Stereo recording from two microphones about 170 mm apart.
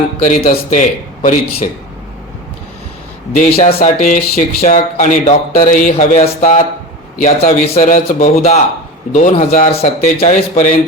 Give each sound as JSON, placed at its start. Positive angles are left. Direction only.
{"t": 0.2, "sound": "speech", "side_deg": 45}
{"t": 3.3, "sound": "speech", "side_deg": 40}
{"t": 4.0, "sound": "speech", "side_deg": 50}